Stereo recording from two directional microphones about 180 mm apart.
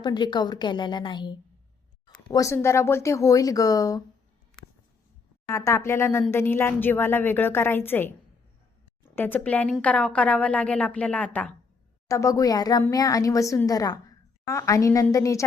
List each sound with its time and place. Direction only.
0.0 s speech: 25° left (ahead or behind)
5.5 s a woman's voice: 15° left (ahead or behind)